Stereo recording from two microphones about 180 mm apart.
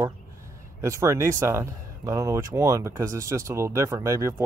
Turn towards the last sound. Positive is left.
turn(degrees=-15)  # may be behind; listen again after turning